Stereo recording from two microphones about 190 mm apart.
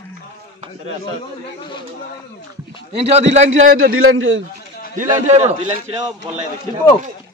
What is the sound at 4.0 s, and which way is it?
Speech, 90° right.